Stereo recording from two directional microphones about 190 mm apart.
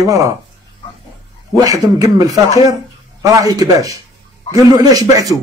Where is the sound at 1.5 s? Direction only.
20° right (ahead or behind).